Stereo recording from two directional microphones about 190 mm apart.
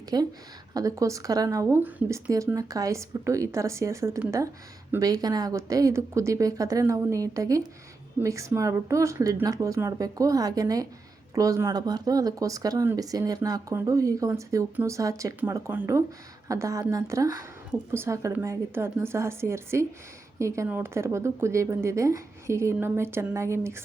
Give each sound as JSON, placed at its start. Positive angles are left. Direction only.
{"t": 0.1, "sound": "a woman's voice", "side_deg": -20}